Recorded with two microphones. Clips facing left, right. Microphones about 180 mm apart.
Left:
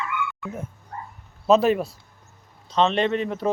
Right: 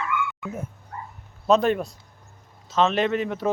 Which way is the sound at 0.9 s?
35° left (ahead or behind).